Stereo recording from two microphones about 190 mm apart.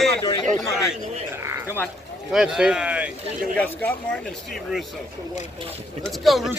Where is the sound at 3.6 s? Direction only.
10° left (ahead or behind).